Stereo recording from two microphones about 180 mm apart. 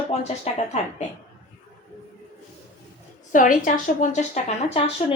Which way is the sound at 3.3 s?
50° left (ahead or behind).